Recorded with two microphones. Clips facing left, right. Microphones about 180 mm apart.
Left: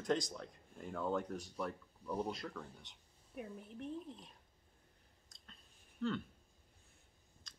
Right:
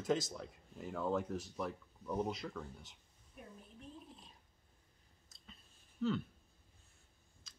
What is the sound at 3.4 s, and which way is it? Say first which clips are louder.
Speech: left 8 dB; 70° left (ahead or behind).